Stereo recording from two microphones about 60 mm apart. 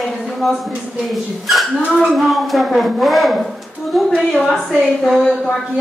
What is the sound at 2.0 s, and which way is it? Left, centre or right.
A woman's voice, centre.